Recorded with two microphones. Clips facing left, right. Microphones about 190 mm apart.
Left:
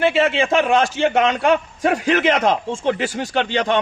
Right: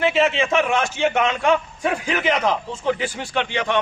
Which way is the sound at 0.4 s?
35° left (ahead or behind).